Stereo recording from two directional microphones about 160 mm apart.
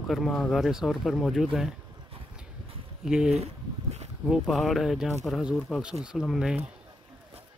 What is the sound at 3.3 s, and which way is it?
Speech, 45° right (ahead or behind).